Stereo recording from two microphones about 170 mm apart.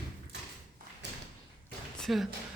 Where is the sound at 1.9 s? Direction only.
Centre (ahead or behind).